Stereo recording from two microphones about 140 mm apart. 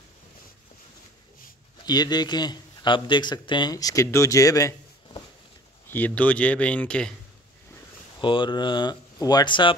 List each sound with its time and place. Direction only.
1.9 s a man's voice: 30° left (ahead or behind)
5.9 s speech: 10° left (ahead or behind)
8.2 s speech: 35° left (ahead or behind)